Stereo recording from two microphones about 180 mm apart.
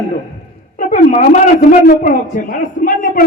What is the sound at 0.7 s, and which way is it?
Speech, 40° left (ahead or behind).